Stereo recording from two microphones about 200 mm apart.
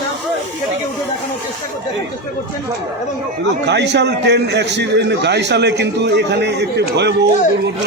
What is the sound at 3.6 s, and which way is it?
A man's voice, 60° right (ahead or behind).